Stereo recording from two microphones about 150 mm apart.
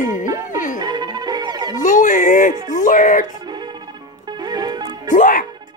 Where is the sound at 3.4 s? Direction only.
30° right (ahead or behind).